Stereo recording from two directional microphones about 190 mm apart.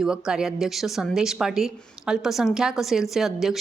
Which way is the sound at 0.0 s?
5° right (ahead or behind).